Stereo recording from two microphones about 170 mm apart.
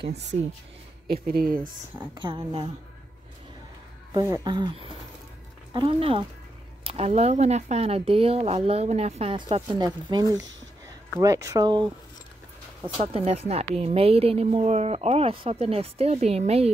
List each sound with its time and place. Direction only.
1.0 s speech: 60° right (ahead or behind)
2.1 s speech: 30° right (ahead or behind)
4.1 s speech: 20° right (ahead or behind)
13.0 s speech: 35° right (ahead or behind)